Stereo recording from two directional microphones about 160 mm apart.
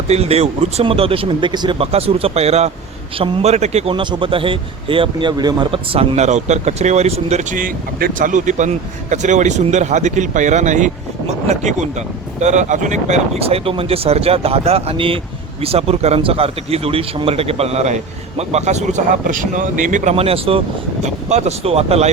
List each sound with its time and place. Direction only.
0.1 s a man's voice: 40° right (ahead or behind)